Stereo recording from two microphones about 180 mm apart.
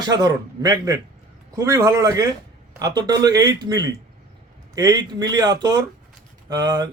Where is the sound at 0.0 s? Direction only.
20° right (ahead or behind).